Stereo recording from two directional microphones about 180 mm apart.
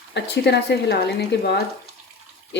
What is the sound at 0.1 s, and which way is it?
Speech, 70° left (ahead or behind).